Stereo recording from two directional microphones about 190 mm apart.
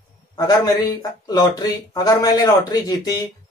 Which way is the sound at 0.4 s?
20° left (ahead or behind).